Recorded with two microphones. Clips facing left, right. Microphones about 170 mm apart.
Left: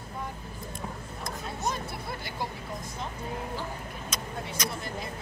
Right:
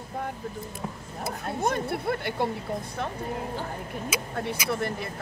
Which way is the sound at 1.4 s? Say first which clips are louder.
Right 6 dB; 55° right (ahead or behind).